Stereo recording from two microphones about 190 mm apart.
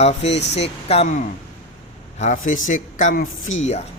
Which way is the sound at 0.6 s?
35° left (ahead or behind).